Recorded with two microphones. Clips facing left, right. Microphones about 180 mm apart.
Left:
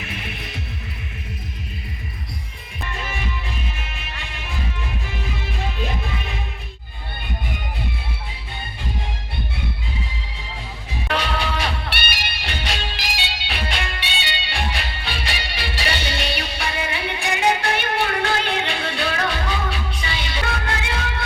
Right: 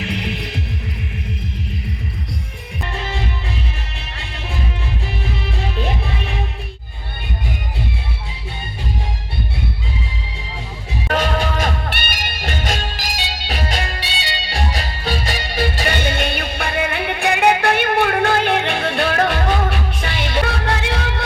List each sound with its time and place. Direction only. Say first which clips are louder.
0.0 s music: right 8 dB; 75° right (ahead or behind)
11.1 s music: right 4 dB; 45° right (ahead or behind); by 21.1 s 65° right (ahead or behind)